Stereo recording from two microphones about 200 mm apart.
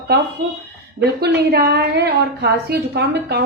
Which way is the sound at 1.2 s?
55° right (ahead or behind).